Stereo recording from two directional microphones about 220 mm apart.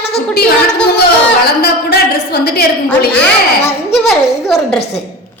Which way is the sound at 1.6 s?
45° left (ahead or behind).